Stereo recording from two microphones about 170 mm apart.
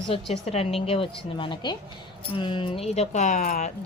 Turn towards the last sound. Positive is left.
turn(degrees=50)  # may be behind; listen again after turning